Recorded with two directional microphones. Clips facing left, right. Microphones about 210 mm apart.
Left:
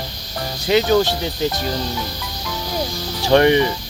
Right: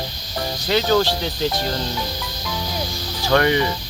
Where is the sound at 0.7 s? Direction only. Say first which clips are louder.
Left 4 dB; 15° left (ahead or behind).